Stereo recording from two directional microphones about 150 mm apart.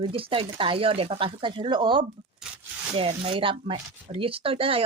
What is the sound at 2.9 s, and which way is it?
Speech, 40° right (ahead or behind).